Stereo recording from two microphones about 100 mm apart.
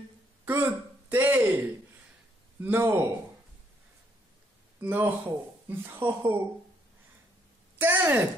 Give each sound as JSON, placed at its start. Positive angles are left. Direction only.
{"t": 0.5, "sound": "a sound", "side_deg": -20}
{"t": 2.6, "sound": "speech", "side_deg": -20}
{"t": 4.7, "sound": "speech", "side_deg": -15}
{"t": 7.8, "sound": "speech", "side_deg": -20}